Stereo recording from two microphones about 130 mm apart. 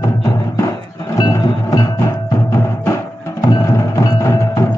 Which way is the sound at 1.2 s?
25° left (ahead or behind).